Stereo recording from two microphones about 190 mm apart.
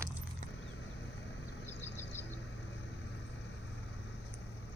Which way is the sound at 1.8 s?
10° left (ahead or behind).